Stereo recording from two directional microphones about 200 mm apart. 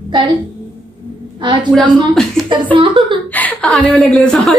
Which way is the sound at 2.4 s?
25° right (ahead or behind).